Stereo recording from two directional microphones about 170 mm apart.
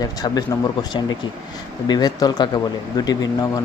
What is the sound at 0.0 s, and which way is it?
Speech, 20° left (ahead or behind).